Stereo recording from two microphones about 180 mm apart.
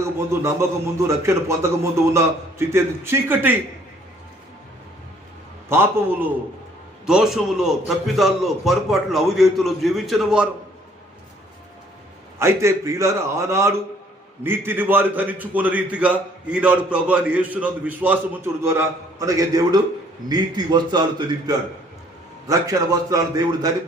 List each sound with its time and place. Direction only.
0.0 s a man's voice: 15° right (ahead or behind)
5.6 s a man's voice: 15° right (ahead or behind)
12.4 s a man's voice: 15° right (ahead or behind)